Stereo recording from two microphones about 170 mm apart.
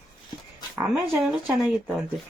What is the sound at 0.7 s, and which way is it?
Speech, 10° right (ahead or behind).